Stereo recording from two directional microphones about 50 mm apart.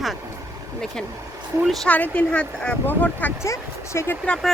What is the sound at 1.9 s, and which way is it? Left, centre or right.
Speech, left.